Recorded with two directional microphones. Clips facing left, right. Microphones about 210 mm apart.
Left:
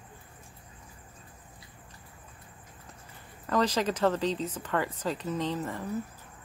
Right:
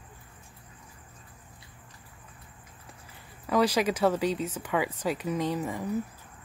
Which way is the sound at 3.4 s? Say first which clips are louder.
Right 3 dB; 10° right (ahead or behind).